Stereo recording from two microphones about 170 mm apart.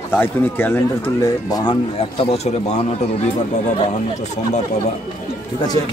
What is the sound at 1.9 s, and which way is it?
A man's voice, 40° left (ahead or behind).